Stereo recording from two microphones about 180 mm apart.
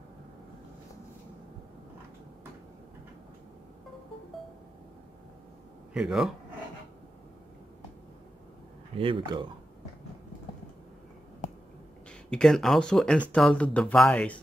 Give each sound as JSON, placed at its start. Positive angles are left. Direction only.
{"t": 5.9, "sound": "speech", "side_deg": 0}
{"t": 8.9, "sound": "speech", "side_deg": -30}
{"t": 12.3, "sound": "speech", "side_deg": 5}